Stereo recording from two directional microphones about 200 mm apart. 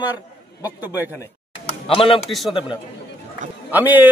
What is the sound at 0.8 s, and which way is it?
Speech, 10° right (ahead or behind).